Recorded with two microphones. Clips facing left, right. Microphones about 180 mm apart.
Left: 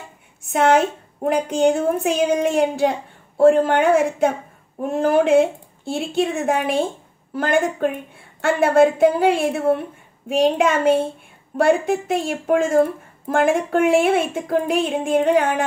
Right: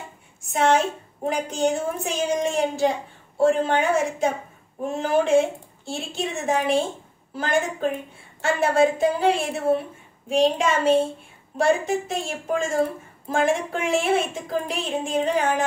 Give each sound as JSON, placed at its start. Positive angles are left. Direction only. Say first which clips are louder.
{"t": 0.5, "sound": "a woman's voice", "louder": "left 4 dB", "side_deg": 60}